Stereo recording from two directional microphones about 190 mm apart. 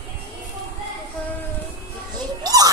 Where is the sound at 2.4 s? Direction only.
20° right (ahead or behind).